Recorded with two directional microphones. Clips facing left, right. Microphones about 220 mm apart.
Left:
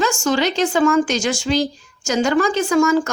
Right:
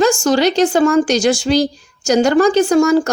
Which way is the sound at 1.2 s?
75° right (ahead or behind).